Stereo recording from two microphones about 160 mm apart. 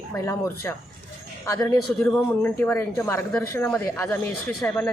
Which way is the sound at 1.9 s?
10° left (ahead or behind).